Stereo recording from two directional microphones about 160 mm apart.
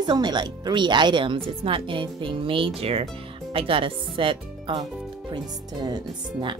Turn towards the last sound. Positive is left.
turn(degrees=-30)  # may be behind; listen again after turning